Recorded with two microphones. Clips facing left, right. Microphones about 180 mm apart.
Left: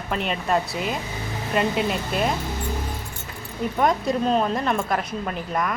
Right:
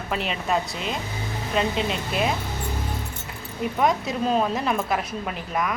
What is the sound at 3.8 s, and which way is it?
Speech, centre (ahead or behind).